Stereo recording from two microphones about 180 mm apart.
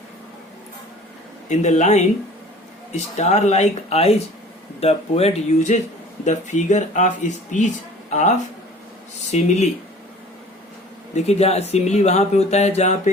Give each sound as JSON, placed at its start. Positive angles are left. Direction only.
{"t": 1.5, "sound": "speech", "side_deg": 40}
{"t": 11.1, "sound": "speech", "side_deg": 35}